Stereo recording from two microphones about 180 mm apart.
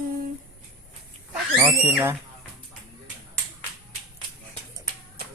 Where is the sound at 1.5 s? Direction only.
15° right (ahead or behind).